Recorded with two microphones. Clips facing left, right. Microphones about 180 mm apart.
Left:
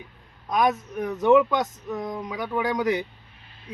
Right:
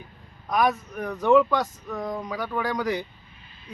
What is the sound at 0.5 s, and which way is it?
Speech, 20° left (ahead or behind).